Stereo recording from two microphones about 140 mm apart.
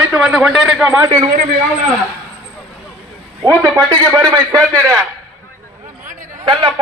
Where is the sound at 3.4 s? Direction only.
25° right (ahead or behind).